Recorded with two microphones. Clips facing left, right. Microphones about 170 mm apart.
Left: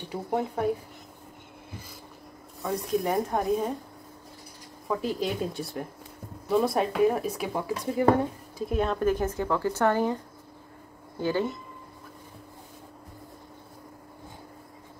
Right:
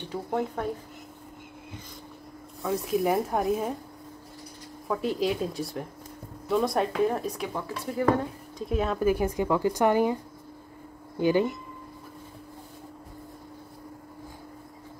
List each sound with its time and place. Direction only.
0.0 s speech: 10° left (ahead or behind)
2.6 s speech: 5° right (ahead or behind)
4.8 s speech: centre (ahead or behind)
7.6 s speech: 15° left (ahead or behind)
8.5 s speech: centre (ahead or behind)
11.1 s speech: 15° right (ahead or behind)